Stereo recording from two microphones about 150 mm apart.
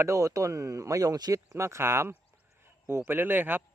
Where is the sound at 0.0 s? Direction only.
20° right (ahead or behind).